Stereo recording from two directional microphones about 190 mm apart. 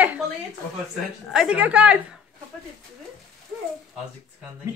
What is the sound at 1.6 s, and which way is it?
Speech, 5° right (ahead or behind).